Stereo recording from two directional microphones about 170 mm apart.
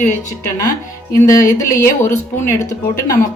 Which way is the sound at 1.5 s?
15° left (ahead or behind).